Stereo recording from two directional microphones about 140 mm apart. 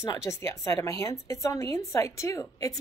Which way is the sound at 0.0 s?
20° left (ahead or behind).